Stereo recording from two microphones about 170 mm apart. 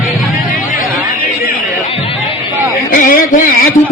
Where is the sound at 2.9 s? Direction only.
55° left (ahead or behind).